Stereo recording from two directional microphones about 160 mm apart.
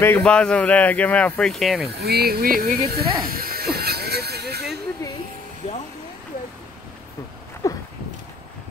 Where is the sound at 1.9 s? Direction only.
80° right; by 2.8 s 65° right (ahead or behind).